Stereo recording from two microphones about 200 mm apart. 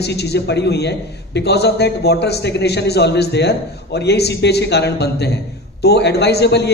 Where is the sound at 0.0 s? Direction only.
55° left (ahead or behind).